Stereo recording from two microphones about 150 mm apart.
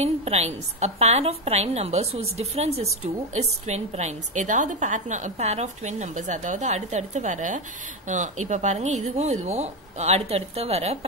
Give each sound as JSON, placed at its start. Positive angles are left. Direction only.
{"t": 0.0, "sound": "a woman's voice", "side_deg": -45}